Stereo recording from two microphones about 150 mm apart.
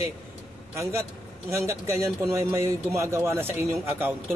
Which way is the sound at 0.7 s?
20° right (ahead or behind).